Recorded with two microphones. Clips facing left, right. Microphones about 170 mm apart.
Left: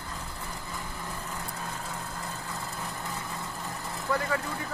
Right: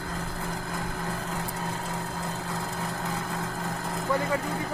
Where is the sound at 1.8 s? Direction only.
90° right.